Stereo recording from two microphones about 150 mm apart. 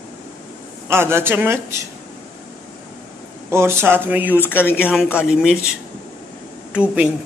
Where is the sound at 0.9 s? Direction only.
15° right (ahead or behind).